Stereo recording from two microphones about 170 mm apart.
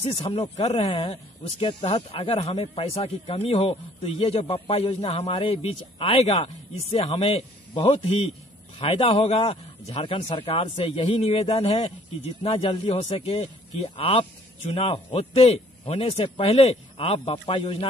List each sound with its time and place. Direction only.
0.2 s speech: 30° left (ahead or behind)